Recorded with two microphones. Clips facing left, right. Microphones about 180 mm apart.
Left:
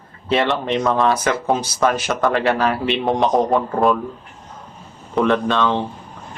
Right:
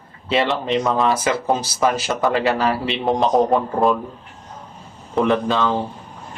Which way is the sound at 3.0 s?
Centre (ahead or behind).